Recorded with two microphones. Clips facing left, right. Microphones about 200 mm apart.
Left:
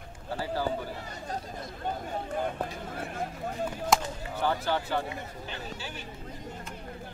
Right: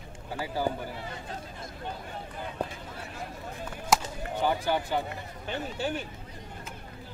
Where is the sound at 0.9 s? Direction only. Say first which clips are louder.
Left 1 dB; 40° left (ahead or behind).